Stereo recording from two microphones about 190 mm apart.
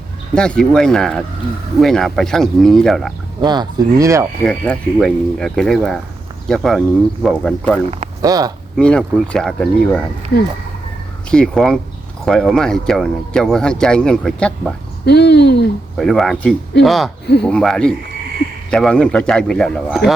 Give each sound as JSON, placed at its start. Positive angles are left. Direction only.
{"t": 0.3, "sound": "speech", "side_deg": 5}
{"t": 3.4, "sound": "speech", "side_deg": -20}
{"t": 4.4, "sound": "speech", "side_deg": 5}
{"t": 8.2, "sound": "speech", "side_deg": -20}
{"t": 8.8, "sound": "speech", "side_deg": 5}
{"t": 11.3, "sound": "speech", "side_deg": 5}
{"t": 15.0, "sound": "speech", "side_deg": 60}
{"t": 16.0, "sound": "speech", "side_deg": 0}